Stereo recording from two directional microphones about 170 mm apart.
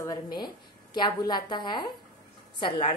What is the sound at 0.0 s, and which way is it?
A woman's voice, 25° left (ahead or behind).